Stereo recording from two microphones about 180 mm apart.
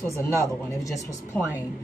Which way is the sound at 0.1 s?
15° left (ahead or behind).